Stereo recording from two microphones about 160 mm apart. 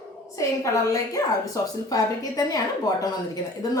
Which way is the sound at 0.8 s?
20° left (ahead or behind).